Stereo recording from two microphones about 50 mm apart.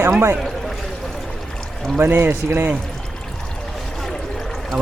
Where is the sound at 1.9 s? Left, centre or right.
Right.